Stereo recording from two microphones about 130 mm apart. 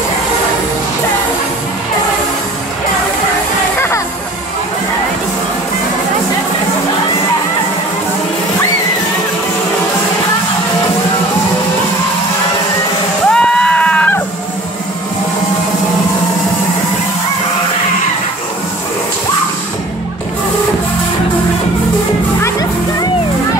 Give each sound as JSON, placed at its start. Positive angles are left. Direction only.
{"t": 3.7, "sound": "music", "side_deg": 15}
{"t": 13.3, "sound": "music", "side_deg": 5}
{"t": 22.4, "sound": "music", "side_deg": 30}